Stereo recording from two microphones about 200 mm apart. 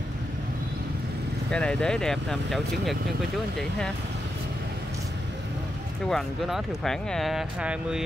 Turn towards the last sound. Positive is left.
turn(degrees=-5)  # may be behind; listen again after turning